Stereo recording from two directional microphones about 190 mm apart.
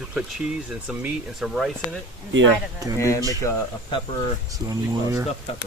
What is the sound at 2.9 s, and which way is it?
Speech, 15° left (ahead or behind).